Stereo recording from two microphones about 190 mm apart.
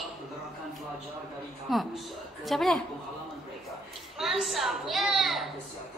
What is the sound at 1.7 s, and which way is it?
A woman's voice, centre (ahead or behind).